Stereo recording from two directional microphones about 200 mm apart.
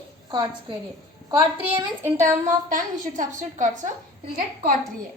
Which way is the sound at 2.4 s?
40° right (ahead or behind).